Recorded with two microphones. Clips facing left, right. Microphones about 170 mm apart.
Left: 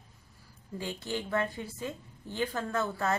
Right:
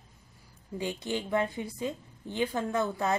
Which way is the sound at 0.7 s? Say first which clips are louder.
Right 3 dB; 15° right (ahead or behind).